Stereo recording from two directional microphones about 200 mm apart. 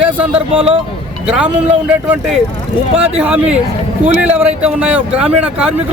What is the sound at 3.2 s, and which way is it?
A man's voice, 5° right (ahead or behind).